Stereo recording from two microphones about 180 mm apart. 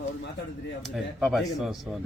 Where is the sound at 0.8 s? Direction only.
Centre (ahead or behind).